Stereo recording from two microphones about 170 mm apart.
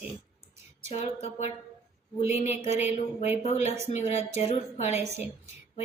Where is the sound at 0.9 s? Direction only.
40° left (ahead or behind).